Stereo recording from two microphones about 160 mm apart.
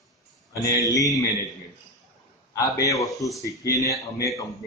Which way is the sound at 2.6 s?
20° left (ahead or behind).